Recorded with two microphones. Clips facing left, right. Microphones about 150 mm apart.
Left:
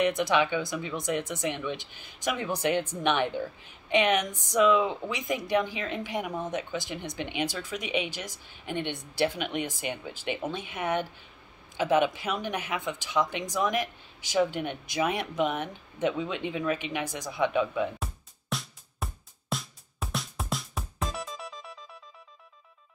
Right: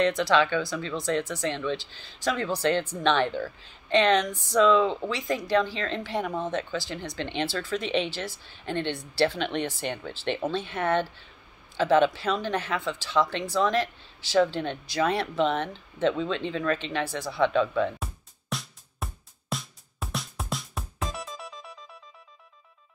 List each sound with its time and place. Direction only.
0.0 s speech: 20° left (ahead or behind)
17.9 s music: centre (ahead or behind)